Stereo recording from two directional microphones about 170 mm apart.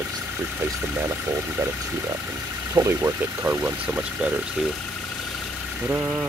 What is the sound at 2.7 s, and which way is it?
Speech, 15° right (ahead or behind).